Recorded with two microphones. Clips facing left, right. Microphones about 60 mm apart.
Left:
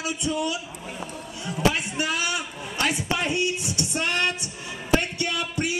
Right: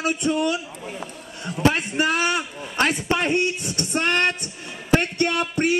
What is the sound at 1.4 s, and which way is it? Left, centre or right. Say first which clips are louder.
A man's voice: right 3 dB; right.